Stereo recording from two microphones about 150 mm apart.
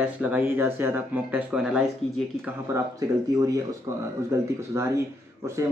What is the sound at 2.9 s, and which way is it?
Speech, 25° right (ahead or behind).